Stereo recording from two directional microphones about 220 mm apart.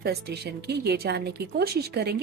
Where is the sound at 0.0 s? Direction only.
45° right (ahead or behind).